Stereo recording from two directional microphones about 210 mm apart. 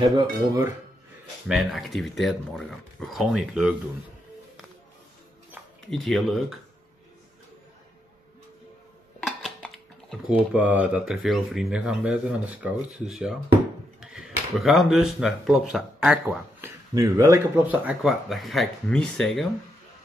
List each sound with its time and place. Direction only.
0.0 s speech: 20° right (ahead or behind)
1.5 s speech: centre (ahead or behind)
5.9 s speech: centre (ahead or behind)
9.2 s speech: centre (ahead or behind)
16.9 s speech: 15° right (ahead or behind); by 19.5 s centre (ahead or behind)